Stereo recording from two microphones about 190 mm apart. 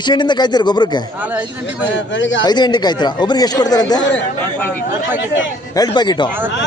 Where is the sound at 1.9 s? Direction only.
80° left.